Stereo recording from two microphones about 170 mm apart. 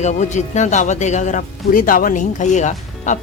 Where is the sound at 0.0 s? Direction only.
45° left (ahead or behind).